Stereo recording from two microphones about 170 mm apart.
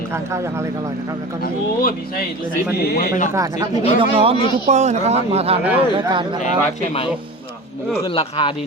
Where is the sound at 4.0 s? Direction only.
35° right (ahead or behind).